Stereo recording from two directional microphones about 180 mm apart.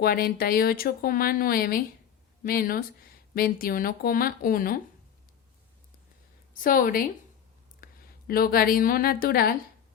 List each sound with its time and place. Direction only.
0.0 s speech: 55° left (ahead or behind)
6.5 s a woman's voice: 50° left (ahead or behind)
7.8 s a sound: 55° left (ahead or behind)
8.3 s speech: 55° left (ahead or behind)